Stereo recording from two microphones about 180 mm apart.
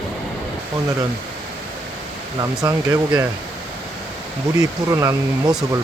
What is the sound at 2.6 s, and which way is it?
Speech, 20° right (ahead or behind).